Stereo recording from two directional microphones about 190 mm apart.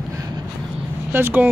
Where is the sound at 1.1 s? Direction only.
10° right (ahead or behind).